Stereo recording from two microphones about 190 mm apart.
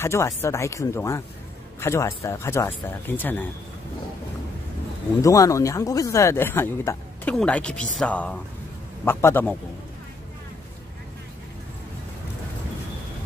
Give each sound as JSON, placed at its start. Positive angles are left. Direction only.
{"t": 0.0, "sound": "speech", "side_deg": 15}
{"t": 5.2, "sound": "speech", "side_deg": 15}